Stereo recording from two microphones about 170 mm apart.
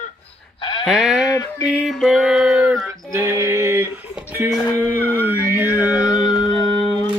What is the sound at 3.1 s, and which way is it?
Music, 15° right (ahead or behind).